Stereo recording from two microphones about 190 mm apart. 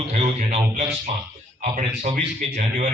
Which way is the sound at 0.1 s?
35° right (ahead or behind).